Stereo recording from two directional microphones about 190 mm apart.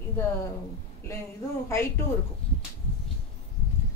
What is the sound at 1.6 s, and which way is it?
Speech, 15° left (ahead or behind).